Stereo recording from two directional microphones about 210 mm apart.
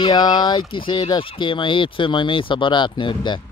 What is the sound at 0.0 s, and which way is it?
Speech, 20° left (ahead or behind).